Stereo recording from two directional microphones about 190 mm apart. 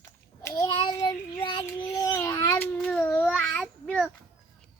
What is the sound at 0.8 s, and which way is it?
Child singing, 20° left (ahead or behind).